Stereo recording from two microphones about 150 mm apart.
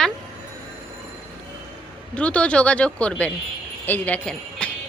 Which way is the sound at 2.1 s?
10° left (ahead or behind).